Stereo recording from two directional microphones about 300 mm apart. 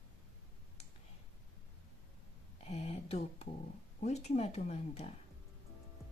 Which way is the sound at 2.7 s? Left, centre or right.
Centre.